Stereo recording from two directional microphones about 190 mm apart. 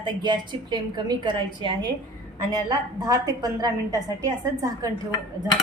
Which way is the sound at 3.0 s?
20° right (ahead or behind).